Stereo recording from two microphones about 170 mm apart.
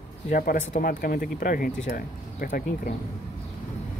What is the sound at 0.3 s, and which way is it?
Speech, 55° left (ahead or behind).